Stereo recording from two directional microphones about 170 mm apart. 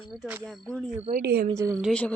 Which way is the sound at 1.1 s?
70° right (ahead or behind).